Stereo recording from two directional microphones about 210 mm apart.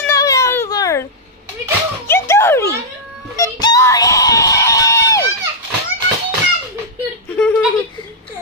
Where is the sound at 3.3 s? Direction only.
15° left (ahead or behind).